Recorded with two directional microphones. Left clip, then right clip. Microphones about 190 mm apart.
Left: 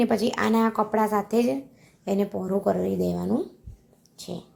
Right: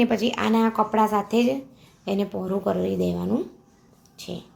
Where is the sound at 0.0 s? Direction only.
10° left (ahead or behind).